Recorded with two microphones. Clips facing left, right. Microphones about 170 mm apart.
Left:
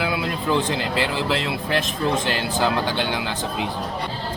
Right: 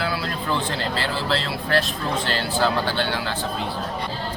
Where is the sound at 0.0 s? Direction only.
15° left (ahead or behind).